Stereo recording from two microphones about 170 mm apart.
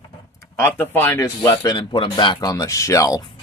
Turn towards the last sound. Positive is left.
turn(degrees=20)  # may be behind; listen again after turning